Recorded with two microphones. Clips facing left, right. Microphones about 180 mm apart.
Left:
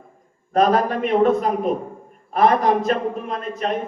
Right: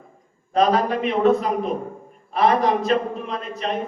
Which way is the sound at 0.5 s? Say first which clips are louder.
Left 1 dB; 50° left (ahead or behind).